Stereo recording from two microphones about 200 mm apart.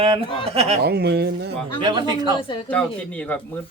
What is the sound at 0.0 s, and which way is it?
Speech, 25° right (ahead or behind).